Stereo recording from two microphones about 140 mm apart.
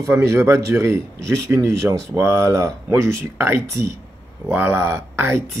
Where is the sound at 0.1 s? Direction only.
20° right (ahead or behind).